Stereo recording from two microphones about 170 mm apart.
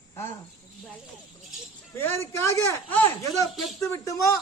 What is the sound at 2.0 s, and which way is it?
A man's voice, 15° left (ahead or behind).